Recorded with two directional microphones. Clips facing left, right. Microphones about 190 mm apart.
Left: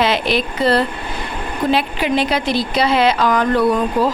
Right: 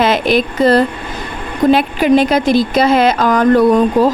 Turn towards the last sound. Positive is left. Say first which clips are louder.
# right 6 dB
turn(degrees=-45)  # may be behind; listen again after turning